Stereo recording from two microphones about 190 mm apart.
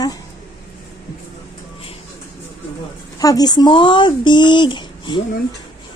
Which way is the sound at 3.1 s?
20° left (ahead or behind).